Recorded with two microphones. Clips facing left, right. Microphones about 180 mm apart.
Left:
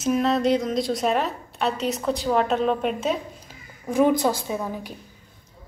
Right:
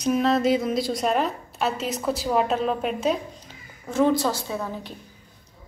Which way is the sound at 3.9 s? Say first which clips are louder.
Left 2 dB; 15° left (ahead or behind).